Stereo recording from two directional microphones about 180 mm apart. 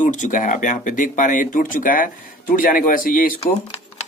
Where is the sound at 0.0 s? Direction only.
45° left (ahead or behind).